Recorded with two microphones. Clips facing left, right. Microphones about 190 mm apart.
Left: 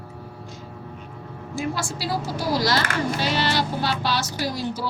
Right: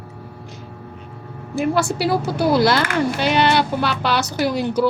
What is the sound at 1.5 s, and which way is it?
A woman's voice, 60° right (ahead or behind).